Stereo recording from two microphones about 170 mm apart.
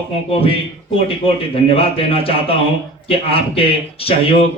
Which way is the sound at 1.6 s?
35° left (ahead or behind).